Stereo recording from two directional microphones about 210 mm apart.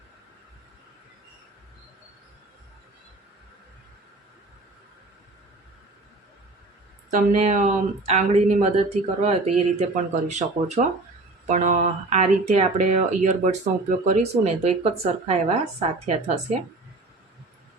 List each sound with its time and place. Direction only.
7.1 s speech: 35° right (ahead or behind)